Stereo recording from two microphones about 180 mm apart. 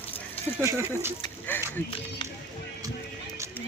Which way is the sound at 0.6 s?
15° right (ahead or behind).